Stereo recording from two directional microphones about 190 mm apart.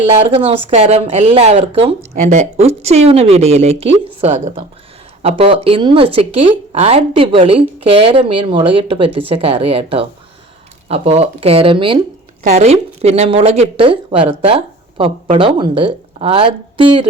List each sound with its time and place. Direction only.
0.3 s speech: 30° right (ahead or behind)